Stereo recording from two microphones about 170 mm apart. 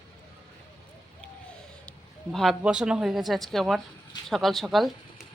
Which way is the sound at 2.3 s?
Centre (ahead or behind).